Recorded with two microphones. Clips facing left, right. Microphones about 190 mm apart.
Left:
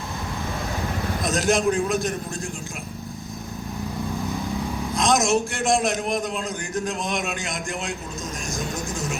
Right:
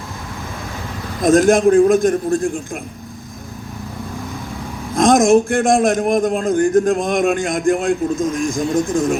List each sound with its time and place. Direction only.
1.2 s a man's voice: 50° right (ahead or behind)
4.9 s a man's voice: 50° right (ahead or behind)